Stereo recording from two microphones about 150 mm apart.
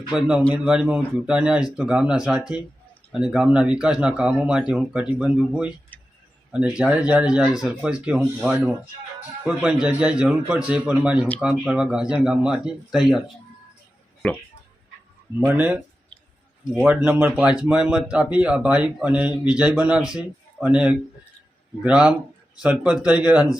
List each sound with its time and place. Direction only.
0.1 s speech: 5° right (ahead or behind)
5.9 s a sound: 10° left (ahead or behind)
6.5 s speech: 5° right (ahead or behind)
15.4 s speech: 15° right (ahead or behind)